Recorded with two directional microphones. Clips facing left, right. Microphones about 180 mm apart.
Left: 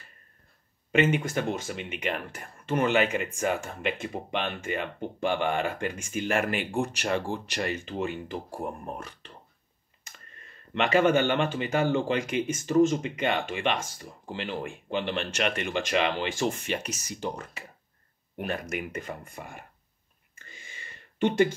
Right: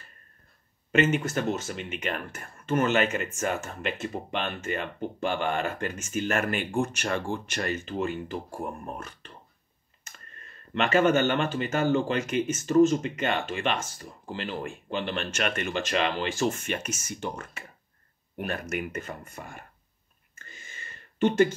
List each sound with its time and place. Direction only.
0.9 s speech: 10° left (ahead or behind)
8.5 s speech: 25° left (ahead or behind)
10.8 s speech: 15° left (ahead or behind)
16.6 s speech: 35° left (ahead or behind)
18.4 s speech: 15° left (ahead or behind)
20.3 s a sound: 10° left (ahead or behind)